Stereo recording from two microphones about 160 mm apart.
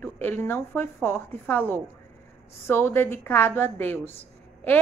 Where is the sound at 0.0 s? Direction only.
10° left (ahead or behind).